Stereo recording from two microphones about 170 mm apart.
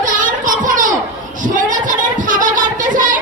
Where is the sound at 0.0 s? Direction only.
50° right (ahead or behind).